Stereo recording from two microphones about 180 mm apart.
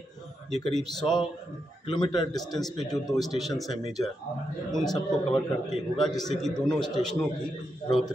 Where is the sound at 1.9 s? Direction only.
25° left (ahead or behind).